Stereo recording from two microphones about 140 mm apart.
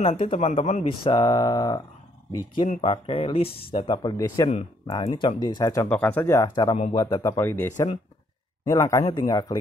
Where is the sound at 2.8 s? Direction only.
40° left (ahead or behind).